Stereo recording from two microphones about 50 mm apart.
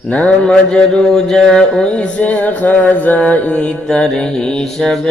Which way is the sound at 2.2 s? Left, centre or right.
Left.